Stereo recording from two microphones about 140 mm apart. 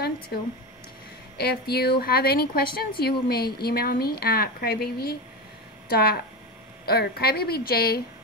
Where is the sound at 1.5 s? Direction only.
90° left.